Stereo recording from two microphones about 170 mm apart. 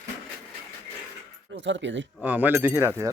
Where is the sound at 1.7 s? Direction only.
90° right.